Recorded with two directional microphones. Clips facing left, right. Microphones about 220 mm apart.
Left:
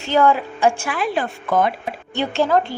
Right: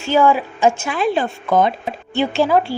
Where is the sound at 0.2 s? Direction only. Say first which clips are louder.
Right 1 dB; 15° right (ahead or behind).